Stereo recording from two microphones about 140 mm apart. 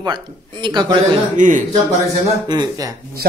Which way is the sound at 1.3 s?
65° right (ahead or behind).